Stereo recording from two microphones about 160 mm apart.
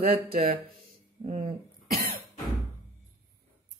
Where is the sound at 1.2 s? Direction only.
40° right (ahead or behind).